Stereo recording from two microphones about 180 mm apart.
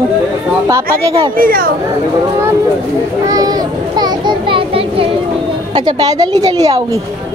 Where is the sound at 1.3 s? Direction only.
55° right (ahead or behind).